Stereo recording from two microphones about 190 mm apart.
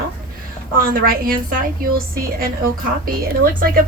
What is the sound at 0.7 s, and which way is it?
A woman's voice, 50° right (ahead or behind).